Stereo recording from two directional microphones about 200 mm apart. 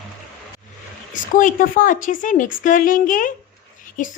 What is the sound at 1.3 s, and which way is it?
A woman's voice, 40° left (ahead or behind).